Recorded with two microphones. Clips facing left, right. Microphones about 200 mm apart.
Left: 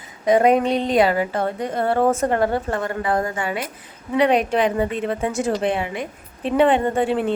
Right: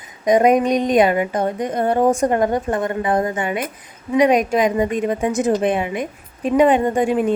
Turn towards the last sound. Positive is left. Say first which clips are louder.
# right 3 dB
turn(degrees=-15)  # may be behind; listen again after turning